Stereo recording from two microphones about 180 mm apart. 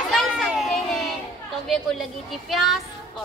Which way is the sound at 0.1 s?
Centre (ahead or behind).